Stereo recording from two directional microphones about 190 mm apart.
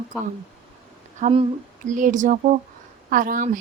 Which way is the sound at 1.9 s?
40° right (ahead or behind).